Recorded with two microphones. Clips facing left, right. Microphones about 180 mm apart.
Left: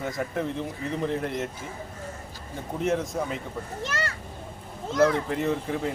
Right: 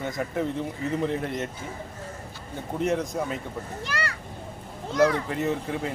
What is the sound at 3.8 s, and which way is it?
Speech, 25° left (ahead or behind).